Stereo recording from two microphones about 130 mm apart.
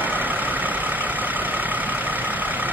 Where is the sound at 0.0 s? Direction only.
15° right (ahead or behind).